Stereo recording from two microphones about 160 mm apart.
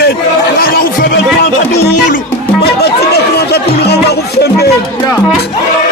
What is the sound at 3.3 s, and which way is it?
Music, 90° left.